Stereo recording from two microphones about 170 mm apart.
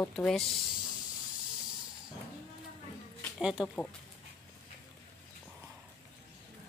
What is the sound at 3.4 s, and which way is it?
Speech, 5° right (ahead or behind).